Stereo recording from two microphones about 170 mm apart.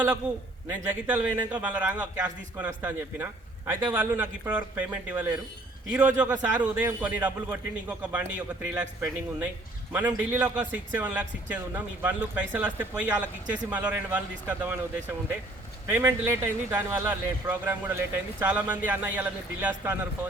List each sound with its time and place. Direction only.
0.7 s a man's voice: 10° right (ahead or behind)